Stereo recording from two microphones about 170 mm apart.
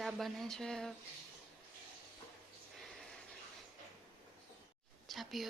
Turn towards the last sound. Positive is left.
turn(degrees=0)  # may be behind; listen again after turning